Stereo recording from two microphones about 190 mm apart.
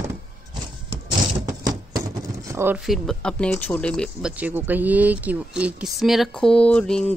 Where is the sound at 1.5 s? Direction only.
15° right (ahead or behind).